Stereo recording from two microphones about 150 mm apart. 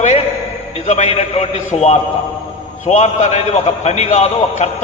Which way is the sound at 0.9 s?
50° left (ahead or behind).